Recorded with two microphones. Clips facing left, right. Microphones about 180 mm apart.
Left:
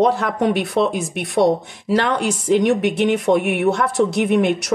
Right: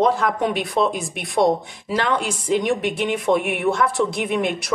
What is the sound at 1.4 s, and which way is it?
A woman's voice, 60° left (ahead or behind).